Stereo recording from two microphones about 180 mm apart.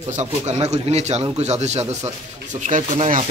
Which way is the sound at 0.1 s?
40° right (ahead or behind).